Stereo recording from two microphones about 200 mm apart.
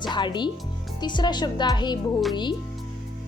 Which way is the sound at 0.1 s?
20° left (ahead or behind).